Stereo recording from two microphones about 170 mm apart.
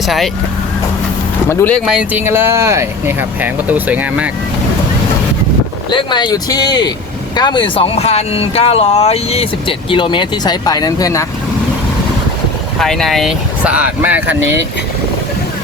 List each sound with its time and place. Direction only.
0.0 s speech: centre (ahead or behind)
1.5 s speech: 15° left (ahead or behind)
1.8 s speech: 5° right (ahead or behind)
5.9 s speech: 25° left (ahead or behind)
12.8 s speech: 5° left (ahead or behind)